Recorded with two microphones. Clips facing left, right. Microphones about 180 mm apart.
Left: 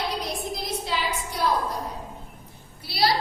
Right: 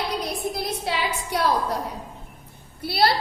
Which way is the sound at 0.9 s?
65° right (ahead or behind).